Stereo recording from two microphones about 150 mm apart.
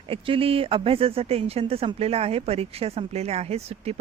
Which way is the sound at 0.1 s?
40° right (ahead or behind).